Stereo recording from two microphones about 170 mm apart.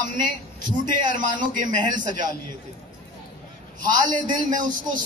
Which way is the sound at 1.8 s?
25° right (ahead or behind).